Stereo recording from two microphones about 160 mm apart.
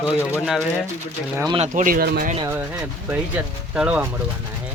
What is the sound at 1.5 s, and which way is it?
Speech, 50° right (ahead or behind).